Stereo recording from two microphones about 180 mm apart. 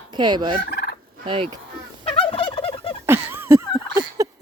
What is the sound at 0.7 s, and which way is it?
Fowl, 60° left (ahead or behind).